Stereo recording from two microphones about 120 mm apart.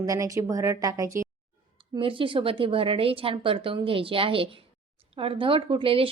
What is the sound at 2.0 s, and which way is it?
A woman's voice, 45° right (ahead or behind).